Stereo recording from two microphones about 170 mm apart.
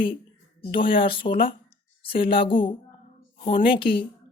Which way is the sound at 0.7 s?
30° left (ahead or behind).